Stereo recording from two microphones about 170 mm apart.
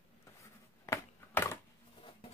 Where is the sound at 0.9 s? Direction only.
15° left (ahead or behind).